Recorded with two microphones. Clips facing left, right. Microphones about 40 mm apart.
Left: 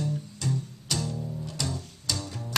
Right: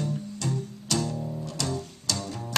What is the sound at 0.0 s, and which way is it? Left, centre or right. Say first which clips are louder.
Music: right 1 dB; centre.